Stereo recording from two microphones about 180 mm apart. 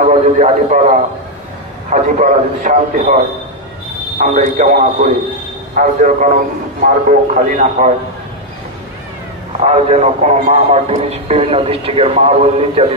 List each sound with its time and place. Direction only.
0.1 s a man's voice: 40° right (ahead or behind)
4.2 s a man's voice: 45° right (ahead or behind)
9.6 s a man's voice: 40° right (ahead or behind)